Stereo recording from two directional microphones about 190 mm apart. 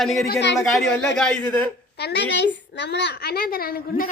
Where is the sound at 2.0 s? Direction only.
60° left (ahead or behind).